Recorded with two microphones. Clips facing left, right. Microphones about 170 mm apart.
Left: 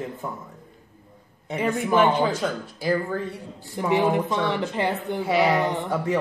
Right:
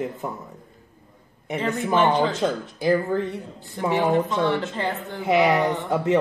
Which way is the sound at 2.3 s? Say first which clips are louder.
Right 3 dB; 20° right (ahead or behind).